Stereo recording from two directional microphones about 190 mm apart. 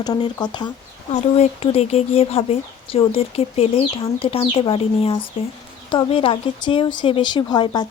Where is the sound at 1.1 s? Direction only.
35° left (ahead or behind).